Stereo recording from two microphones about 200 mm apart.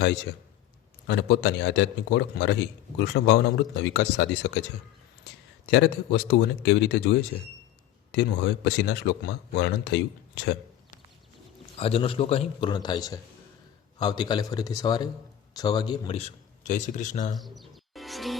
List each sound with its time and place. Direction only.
1.0 s speech: 55° left (ahead or behind)
5.7 s speech: 55° left (ahead or behind)
11.8 s a man's voice: 30° left (ahead or behind)
17.3 s music: centre (ahead or behind)